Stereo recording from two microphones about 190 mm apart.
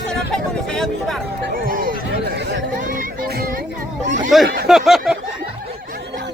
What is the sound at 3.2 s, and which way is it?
Music, 50° right (ahead or behind).